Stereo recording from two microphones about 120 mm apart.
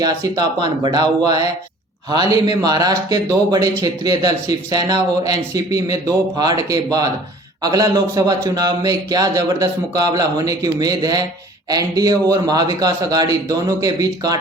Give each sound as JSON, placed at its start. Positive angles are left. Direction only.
{"t": 0.0, "sound": "a man's voice", "side_deg": -35}